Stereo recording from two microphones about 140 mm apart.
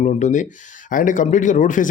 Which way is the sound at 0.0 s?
60° left (ahead or behind).